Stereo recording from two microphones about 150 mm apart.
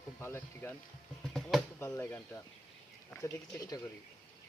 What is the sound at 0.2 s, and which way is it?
Speech, 15° left (ahead or behind).